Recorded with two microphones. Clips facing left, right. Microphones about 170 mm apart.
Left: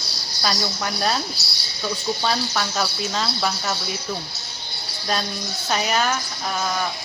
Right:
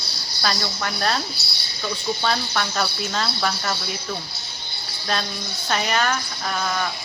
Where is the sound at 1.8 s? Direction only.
5° left (ahead or behind).